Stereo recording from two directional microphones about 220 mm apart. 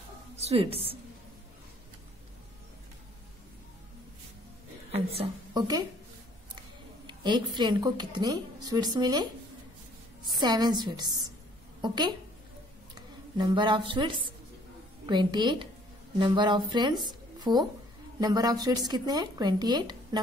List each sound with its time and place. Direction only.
0.4 s a woman's voice: 25° right (ahead or behind)
4.9 s a woman's voice: 25° right (ahead or behind)
7.1 s a woman's voice: 20° right (ahead or behind)
10.4 s a woman's voice: 20° right (ahead or behind)
13.4 s a woman's voice: 20° right (ahead or behind)